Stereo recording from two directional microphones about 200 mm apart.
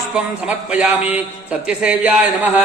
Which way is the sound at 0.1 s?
5° right (ahead or behind).